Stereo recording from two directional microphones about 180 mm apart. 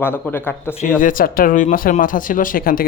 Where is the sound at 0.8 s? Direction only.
50° left (ahead or behind).